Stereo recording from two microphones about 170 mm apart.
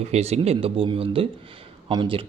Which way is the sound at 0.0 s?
40° right (ahead or behind).